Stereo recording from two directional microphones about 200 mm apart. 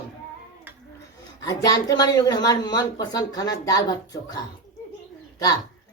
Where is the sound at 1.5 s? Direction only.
20° left (ahead or behind).